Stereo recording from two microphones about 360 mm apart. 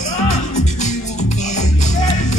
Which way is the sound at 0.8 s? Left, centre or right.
Centre.